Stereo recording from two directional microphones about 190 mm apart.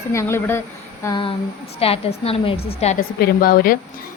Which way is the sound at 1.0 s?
25° left (ahead or behind).